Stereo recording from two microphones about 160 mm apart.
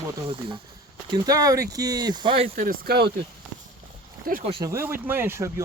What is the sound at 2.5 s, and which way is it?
Speech, 65° right (ahead or behind).